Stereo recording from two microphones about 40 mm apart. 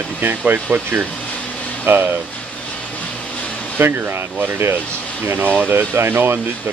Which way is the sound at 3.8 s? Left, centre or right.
Right.